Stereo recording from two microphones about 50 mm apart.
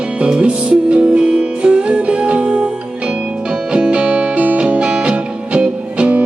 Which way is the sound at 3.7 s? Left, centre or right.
Centre.